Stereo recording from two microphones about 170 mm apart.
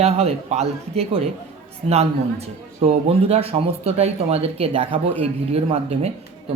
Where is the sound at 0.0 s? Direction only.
40° right (ahead or behind).